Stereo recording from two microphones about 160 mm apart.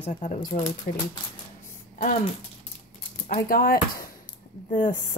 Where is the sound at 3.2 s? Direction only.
65° left (ahead or behind).